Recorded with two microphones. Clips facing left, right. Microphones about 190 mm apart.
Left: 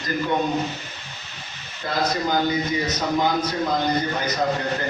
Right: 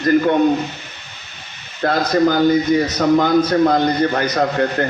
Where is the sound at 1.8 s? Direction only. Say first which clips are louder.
Right 9 dB; 65° right (ahead or behind).